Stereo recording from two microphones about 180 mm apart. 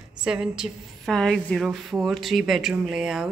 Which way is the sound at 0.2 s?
5° right (ahead or behind).